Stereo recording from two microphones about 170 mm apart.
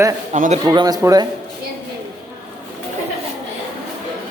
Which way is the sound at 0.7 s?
20° right (ahead or behind).